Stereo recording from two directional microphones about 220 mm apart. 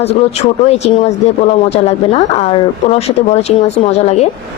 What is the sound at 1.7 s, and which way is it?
Speech, 30° left (ahead or behind).